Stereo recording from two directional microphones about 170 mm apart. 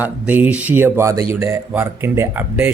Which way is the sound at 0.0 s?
10° right (ahead or behind).